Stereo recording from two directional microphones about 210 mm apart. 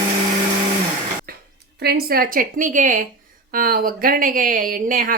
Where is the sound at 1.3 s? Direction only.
45° right (ahead or behind).